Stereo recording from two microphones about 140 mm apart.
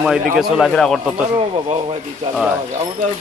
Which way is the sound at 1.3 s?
35° right (ahead or behind).